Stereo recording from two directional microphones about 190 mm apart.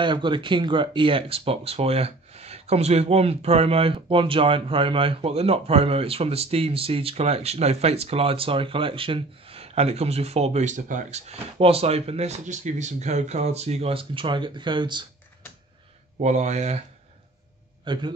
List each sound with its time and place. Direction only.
0.0 s speech: 25° right (ahead or behind)
16.2 s speech: 40° right (ahead or behind)
17.9 s a man's voice: 25° right (ahead or behind)